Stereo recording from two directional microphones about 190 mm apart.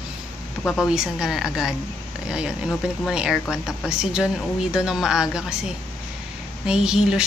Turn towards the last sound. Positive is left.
turn(degrees=-5)  # may be behind; listen again after turning